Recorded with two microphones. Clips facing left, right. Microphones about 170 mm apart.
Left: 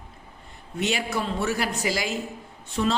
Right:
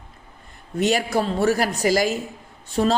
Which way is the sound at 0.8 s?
40° right (ahead or behind).